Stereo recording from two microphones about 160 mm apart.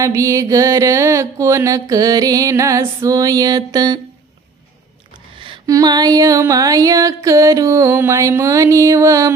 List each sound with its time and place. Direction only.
0.0 s music: 20° right (ahead or behind)
5.4 s music: 25° right (ahead or behind)